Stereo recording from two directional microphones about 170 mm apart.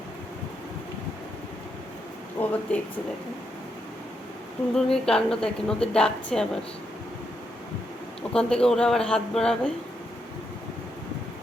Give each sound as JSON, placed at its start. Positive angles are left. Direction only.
{"t": 2.4, "sound": "speech", "side_deg": 10}
{"t": 4.7, "sound": "a woman's voice", "side_deg": 5}
{"t": 8.3, "sound": "a woman's voice", "side_deg": 5}